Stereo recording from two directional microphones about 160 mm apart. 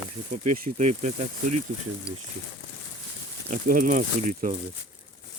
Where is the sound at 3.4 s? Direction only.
60° right (ahead or behind).